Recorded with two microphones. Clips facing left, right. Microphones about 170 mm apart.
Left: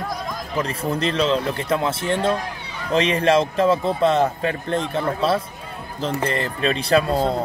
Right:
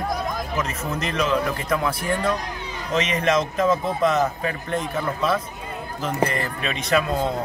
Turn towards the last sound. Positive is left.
turn(degrees=35)  # may be behind; listen again after turning